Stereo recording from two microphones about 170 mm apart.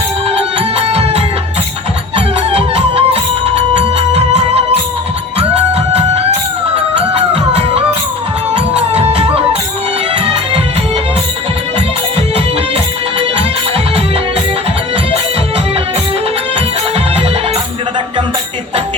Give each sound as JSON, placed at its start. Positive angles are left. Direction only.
{"t": 0.9, "sound": "music", "side_deg": -35}
{"t": 5.9, "sound": "music", "side_deg": -40}